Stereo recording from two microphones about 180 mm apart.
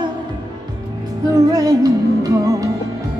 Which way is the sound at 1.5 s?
20° right (ahead or behind).